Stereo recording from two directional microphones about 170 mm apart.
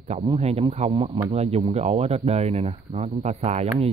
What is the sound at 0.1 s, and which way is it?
Speech, 35° right (ahead or behind).